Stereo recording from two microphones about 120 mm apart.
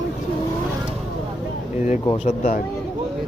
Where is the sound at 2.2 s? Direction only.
85° left.